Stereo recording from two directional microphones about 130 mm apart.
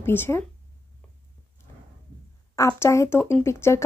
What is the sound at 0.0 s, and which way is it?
Speech, 15° left (ahead or behind).